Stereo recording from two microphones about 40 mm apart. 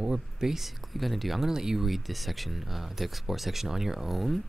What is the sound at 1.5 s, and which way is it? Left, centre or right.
Speech, centre.